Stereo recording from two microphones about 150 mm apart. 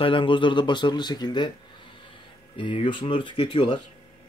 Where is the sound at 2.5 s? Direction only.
35° left (ahead or behind).